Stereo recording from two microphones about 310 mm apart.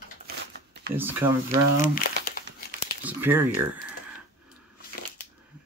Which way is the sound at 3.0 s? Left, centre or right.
Centre.